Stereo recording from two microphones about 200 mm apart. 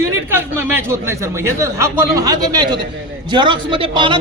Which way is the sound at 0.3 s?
10° right (ahead or behind).